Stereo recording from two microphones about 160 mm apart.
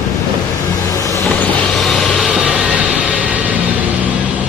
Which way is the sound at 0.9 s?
20° left (ahead or behind).